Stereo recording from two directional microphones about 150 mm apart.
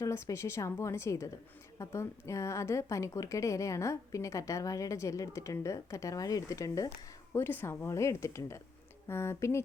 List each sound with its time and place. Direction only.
0.0 s a woman's voice: 20° left (ahead or behind)